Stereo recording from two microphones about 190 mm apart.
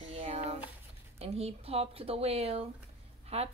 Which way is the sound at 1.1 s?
35° right (ahead or behind).